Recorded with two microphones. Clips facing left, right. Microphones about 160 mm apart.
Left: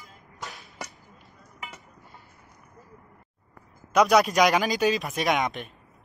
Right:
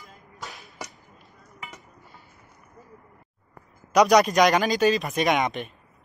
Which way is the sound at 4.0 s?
Centre (ahead or behind).